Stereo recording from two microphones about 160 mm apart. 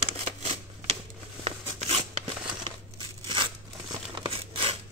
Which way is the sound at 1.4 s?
40° right (ahead or behind).